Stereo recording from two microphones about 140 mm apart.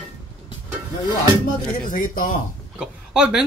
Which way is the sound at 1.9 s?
75° left (ahead or behind).